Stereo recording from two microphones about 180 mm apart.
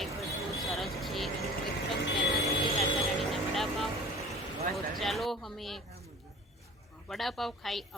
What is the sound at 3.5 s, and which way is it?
A woman's voice, centre (ahead or behind).